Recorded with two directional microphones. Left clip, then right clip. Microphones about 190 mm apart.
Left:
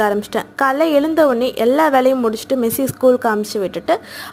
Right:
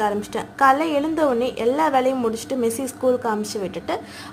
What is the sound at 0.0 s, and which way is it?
A woman's voice, 30° left (ahead or behind).